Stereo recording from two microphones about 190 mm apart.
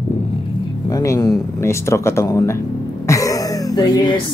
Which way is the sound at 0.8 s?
15° left (ahead or behind).